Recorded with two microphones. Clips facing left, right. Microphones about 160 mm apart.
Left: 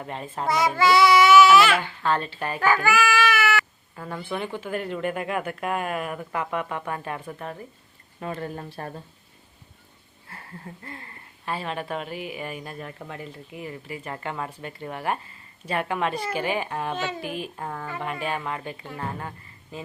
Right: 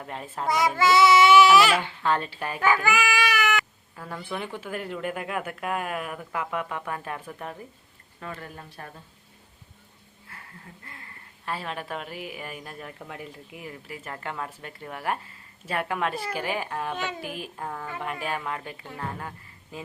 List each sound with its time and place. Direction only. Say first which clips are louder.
0.0 s speech: left 2 dB; centre (ahead or behind)
0.4 s speech: left 1 dB; 15° right (ahead or behind); by 1.8 s 35° right (ahead or behind)
2.0 s speech: left 1 dB; 10° right (ahead or behind)
2.9 s baby cry: left 3 dB; 15° right (ahead or behind)
3.9 s a woman's voice: left 3 dB; centre (ahead or behind)
8.2 s speech: left 7 dB; 30° left (ahead or behind)
10.2 s a sound: left 6 dB; 35° left (ahead or behind)
11.4 s speech: left 3 dB; centre (ahead or behind)
19.7 s speech: left 2 dB; 10° right (ahead or behind)